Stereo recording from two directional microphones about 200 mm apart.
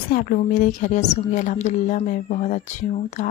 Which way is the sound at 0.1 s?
40° left (ahead or behind).